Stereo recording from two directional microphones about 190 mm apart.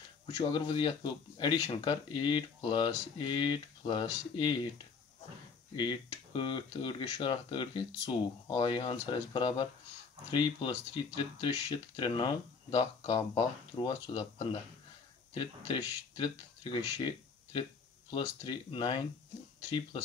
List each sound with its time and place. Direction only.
0.4 s speech: 25° left (ahead or behind)
5.8 s speech: 25° left (ahead or behind)
17.0 s a sound: 25° left (ahead or behind)
18.1 s speech: 30° left (ahead or behind)